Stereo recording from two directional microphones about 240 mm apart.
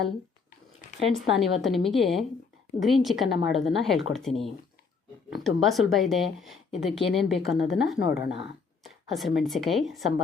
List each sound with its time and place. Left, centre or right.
1.4 s speech: centre
8.2 s speech: left
8.8 s speech: centre